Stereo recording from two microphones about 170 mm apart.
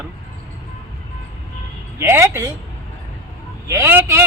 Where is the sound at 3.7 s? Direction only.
15° right (ahead or behind).